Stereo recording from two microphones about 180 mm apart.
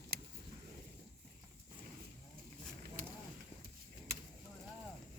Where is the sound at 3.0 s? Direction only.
50° right (ahead or behind).